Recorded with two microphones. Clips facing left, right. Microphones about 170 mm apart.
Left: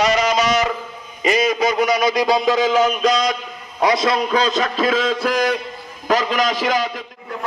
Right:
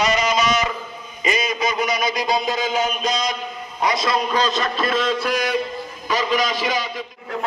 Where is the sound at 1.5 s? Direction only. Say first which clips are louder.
Left 5 dB; 80° left.